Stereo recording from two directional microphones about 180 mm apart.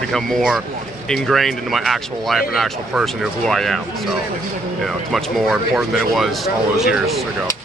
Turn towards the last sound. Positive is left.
turn(degrees=0)  # may be behind; listen again after turning